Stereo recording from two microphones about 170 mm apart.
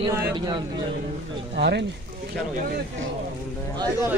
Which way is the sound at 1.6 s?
85° right.